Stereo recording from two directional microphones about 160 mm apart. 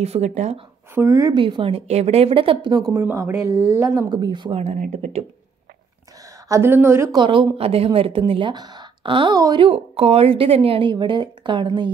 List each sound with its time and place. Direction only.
0.0 s speech: 45° right (ahead or behind)
0.9 s a woman's voice: 20° right (ahead or behind)
1.4 s a woman's voice: 35° right (ahead or behind)
2.9 s a woman's voice: 15° right (ahead or behind)
4.6 s speech: 45° right (ahead or behind)
6.5 s speech: 15° right (ahead or behind)
7.2 s a woman's voice: 30° right (ahead or behind)